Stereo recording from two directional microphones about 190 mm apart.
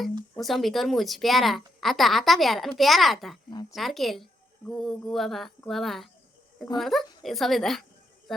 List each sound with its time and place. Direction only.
0.3 s a woman's voice: centre (ahead or behind)
3.5 s a sound: 20° left (ahead or behind)
3.8 s a woman's voice: centre (ahead or behind)